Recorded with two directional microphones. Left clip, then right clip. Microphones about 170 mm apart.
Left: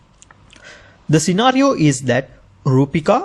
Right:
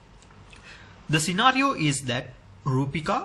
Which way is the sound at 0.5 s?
40° left (ahead or behind).